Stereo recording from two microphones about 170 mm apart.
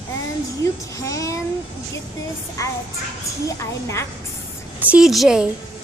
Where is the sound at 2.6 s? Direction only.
20° left (ahead or behind).